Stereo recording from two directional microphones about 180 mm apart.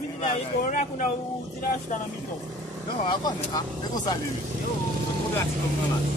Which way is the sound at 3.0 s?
20° left (ahead or behind).